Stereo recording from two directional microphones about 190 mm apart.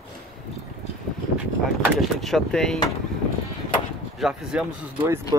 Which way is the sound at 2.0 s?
Centre (ahead or behind).